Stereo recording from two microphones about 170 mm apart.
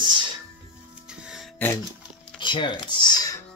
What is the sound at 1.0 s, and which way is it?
Music, 5° right (ahead or behind).